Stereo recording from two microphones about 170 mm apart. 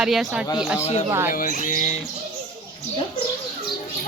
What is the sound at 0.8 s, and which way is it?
Speech, 40° left (ahead or behind).